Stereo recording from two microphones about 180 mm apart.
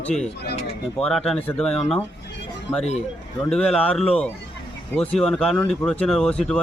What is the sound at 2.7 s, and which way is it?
Speech, 15° left (ahead or behind).